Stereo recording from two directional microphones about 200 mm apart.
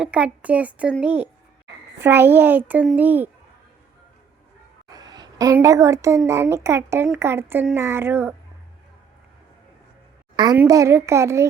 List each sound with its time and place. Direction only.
0.0 s a woman's voice: 5° right (ahead or behind)
4.9 s a sound: 20° right (ahead or behind)
5.5 s a woman's voice: 15° right (ahead or behind)
10.3 s a woman's voice: 20° right (ahead or behind)